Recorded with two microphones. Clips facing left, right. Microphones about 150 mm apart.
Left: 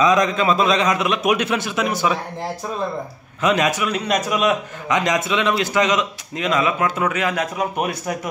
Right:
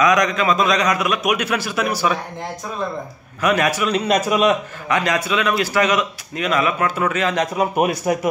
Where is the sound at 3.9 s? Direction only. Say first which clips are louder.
Right 3 dB; centre (ahead or behind).